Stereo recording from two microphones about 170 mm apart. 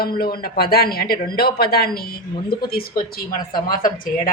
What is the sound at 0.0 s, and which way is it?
Speech, 60° left (ahead or behind).